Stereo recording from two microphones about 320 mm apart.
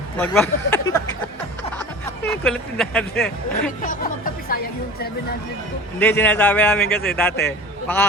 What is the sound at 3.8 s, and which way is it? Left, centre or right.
Speech, left.